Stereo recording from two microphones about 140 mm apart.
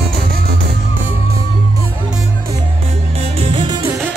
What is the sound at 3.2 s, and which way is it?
Music, 40° right (ahead or behind).